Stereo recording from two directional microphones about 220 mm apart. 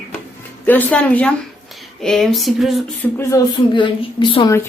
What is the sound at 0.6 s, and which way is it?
A woman's voice, 10° left (ahead or behind).